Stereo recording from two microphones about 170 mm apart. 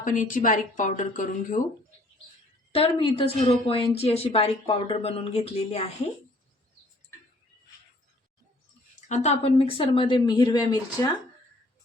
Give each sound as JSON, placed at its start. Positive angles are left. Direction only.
{"t": 0.0, "sound": "speech", "side_deg": 50}
{"t": 2.7, "sound": "speech", "side_deg": 35}
{"t": 9.0, "sound": "speech", "side_deg": 45}